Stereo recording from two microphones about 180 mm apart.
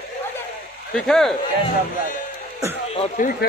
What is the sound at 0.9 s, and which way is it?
Speech, centre (ahead or behind).